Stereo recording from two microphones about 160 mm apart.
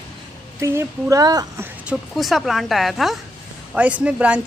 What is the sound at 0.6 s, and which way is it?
Speech, 15° right (ahead or behind).